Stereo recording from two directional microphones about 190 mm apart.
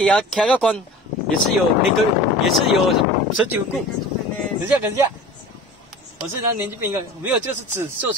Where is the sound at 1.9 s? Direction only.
Centre (ahead or behind).